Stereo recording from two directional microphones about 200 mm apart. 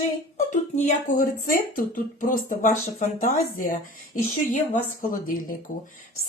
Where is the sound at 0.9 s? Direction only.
40° left (ahead or behind).